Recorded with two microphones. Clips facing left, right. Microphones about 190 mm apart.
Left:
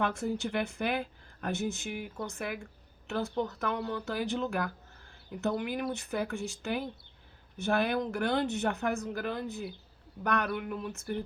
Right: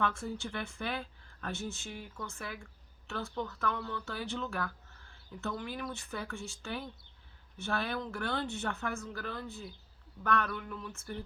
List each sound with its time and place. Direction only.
0.0 s speech: 15° left (ahead or behind)